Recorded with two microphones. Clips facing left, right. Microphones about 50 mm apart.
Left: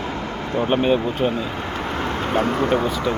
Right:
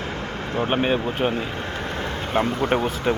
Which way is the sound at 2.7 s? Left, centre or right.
Right.